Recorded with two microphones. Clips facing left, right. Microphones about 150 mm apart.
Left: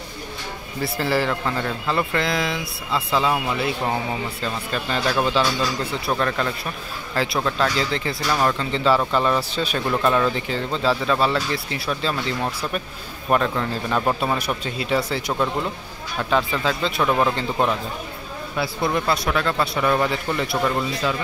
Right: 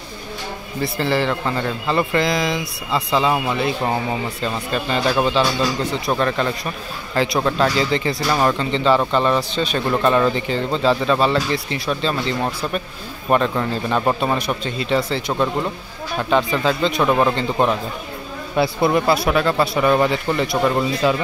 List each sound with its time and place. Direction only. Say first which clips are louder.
0.8 s speech: right 2 dB; 10° left (ahead or behind)
9.8 s speech: right 3 dB; 5° right (ahead or behind)
14.4 s speech: right 3 dB; 10° left (ahead or behind)
17.0 s speech: right 2 dB; 10° right (ahead or behind)
18.8 s speech: right 4 dB; 10° right (ahead or behind)
20.5 s speech: right 4 dB; 15° right (ahead or behind)